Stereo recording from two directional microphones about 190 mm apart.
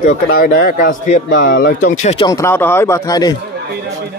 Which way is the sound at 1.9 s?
40° left (ahead or behind).